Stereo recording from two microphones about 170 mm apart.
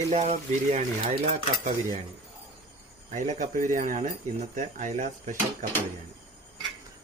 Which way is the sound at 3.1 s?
45° right (ahead or behind).